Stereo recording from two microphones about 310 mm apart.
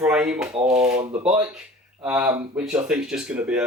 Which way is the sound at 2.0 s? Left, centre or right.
Centre.